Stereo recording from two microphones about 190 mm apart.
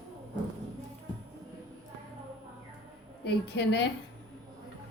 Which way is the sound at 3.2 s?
65° left (ahead or behind).